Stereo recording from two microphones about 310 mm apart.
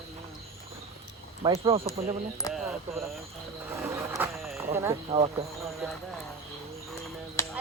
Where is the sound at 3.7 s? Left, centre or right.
Centre.